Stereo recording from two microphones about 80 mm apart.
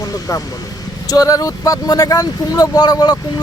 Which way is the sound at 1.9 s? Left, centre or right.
Left.